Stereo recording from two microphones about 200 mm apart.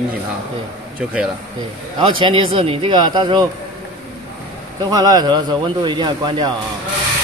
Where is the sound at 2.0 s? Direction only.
25° right (ahead or behind).